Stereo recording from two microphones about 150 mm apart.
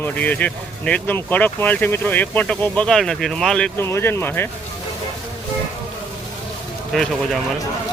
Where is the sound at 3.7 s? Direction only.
15° left (ahead or behind).